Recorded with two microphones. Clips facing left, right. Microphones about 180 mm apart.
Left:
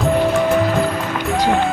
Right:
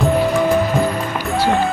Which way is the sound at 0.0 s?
Centre (ahead or behind).